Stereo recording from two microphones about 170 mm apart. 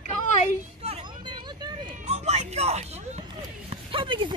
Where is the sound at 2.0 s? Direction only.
40° right (ahead or behind).